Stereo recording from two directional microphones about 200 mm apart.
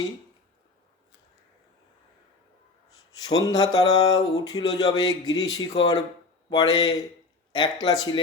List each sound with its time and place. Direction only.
3.1 s speech: 20° left (ahead or behind)